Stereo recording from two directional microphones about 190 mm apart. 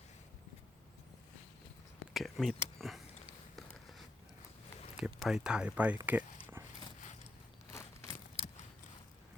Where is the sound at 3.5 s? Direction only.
Centre (ahead or behind).